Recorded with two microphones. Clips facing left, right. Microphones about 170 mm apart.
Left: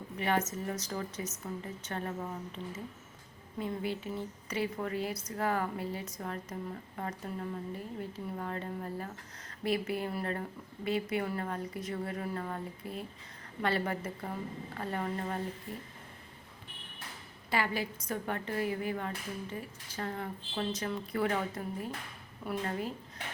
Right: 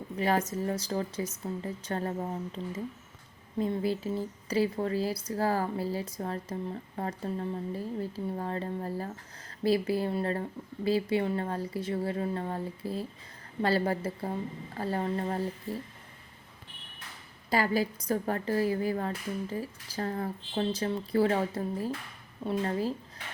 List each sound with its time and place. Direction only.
0.2 s a woman's voice: 35° right (ahead or behind)
3.6 s a woman's voice: 35° right (ahead or behind)
17.5 s a woman's voice: 40° right (ahead or behind)